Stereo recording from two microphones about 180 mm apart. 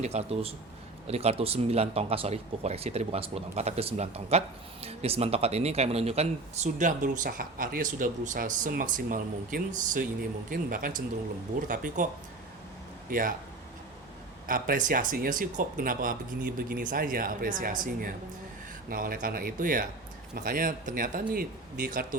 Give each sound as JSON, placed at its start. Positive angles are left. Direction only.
{"t": 0.0, "sound": "speech", "side_deg": -35}
{"t": 13.1, "sound": "speech", "side_deg": -50}
{"t": 14.4, "sound": "speech", "side_deg": -50}